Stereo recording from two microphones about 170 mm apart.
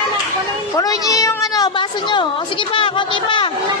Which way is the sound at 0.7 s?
20° left (ahead or behind).